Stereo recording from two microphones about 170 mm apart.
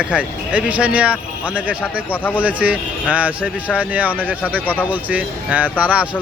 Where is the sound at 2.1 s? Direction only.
10° left (ahead or behind).